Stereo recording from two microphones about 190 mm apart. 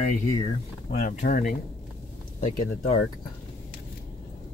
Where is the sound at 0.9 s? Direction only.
40° left (ahead or behind).